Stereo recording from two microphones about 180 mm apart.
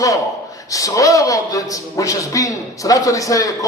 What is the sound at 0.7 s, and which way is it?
A man's voice, 20° left (ahead or behind).